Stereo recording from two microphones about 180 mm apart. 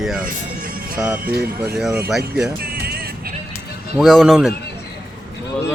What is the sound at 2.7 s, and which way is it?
Music, 60° right (ahead or behind).